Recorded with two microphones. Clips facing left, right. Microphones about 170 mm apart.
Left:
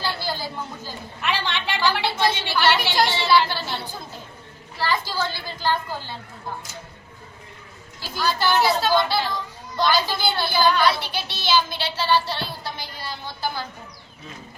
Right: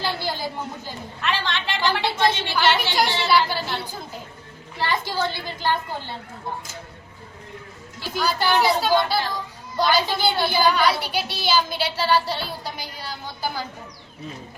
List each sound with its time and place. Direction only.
0.0 s a sound: 20° right (ahead or behind)
1.2 s a woman's voice: 15° left (ahead or behind)
1.7 s a woman's voice: 20° right (ahead or behind)
4.8 s a woman's voice: 20° right (ahead or behind)
8.1 s a woman's voice: 15° right (ahead or behind)
12.3 s music: 10° right (ahead or behind)